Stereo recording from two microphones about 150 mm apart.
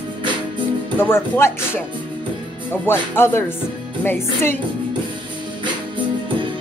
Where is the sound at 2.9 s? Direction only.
15° left (ahead or behind).